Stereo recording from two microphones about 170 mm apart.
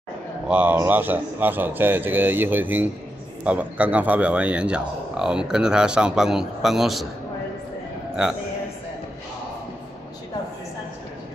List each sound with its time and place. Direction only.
0.5 s a man's voice: 10° right (ahead or behind)
8.2 s a man's voice: 5° right (ahead or behind)